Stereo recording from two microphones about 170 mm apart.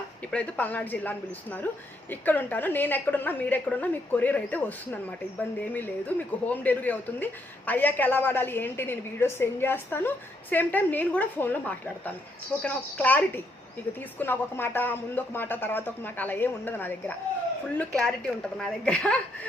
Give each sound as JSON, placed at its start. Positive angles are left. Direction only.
{"t": 0.3, "sound": "a woman's voice", "side_deg": 10}